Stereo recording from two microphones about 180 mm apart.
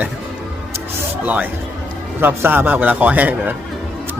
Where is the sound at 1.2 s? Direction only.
10° right (ahead or behind).